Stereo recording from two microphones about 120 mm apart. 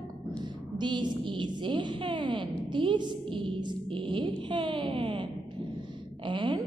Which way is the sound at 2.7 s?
40° right (ahead or behind).